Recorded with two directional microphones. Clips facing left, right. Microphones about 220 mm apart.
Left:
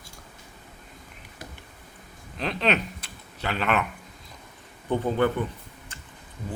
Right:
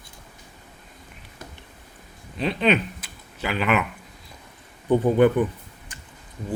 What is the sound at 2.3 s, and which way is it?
Speech, centre (ahead or behind).